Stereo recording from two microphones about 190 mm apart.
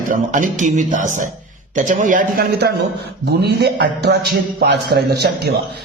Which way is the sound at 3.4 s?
60° right (ahead or behind).